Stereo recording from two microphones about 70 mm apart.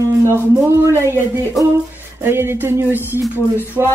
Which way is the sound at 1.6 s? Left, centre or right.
Centre.